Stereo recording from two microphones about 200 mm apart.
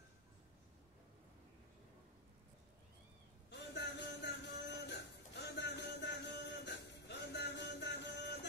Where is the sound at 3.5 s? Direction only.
60° left (ahead or behind).